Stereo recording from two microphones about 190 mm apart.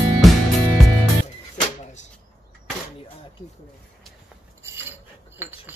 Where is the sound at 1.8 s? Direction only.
40° left (ahead or behind).